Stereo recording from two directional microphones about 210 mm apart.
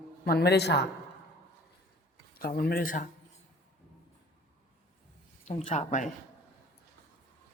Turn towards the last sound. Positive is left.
turn(degrees=35)  # may be behind; listen again after turning